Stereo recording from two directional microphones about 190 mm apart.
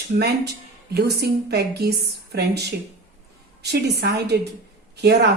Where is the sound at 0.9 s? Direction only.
60° right (ahead or behind).